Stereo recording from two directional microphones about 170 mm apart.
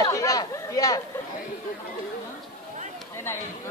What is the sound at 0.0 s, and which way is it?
Chatter, 20° left (ahead or behind).